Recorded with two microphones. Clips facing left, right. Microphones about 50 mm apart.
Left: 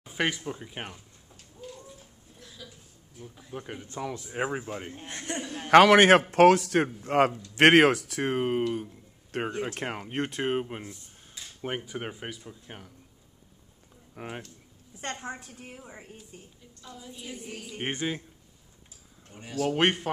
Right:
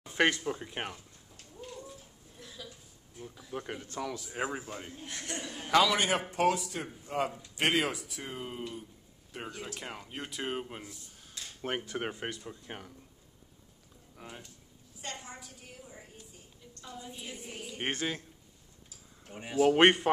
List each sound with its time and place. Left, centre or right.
0.2 s speech: centre
2.3 s hiccup: centre
3.5 s speech: centre
3.8 s speech: left
5.7 s speech: left
9.4 s a woman's voice: left
11.3 s dishes: centre
12.0 s speech: centre
12.4 s a woman's voice: centre
14.1 s a woman's voice: left
15.8 s a sound: left
16.8 s a woman's voice: centre
17.9 s speech: centre
19.2 s a woman's voice: centre